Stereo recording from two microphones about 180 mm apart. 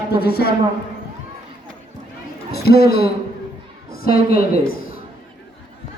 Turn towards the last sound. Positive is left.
turn(degrees=55)  # may be behind; listen again after turning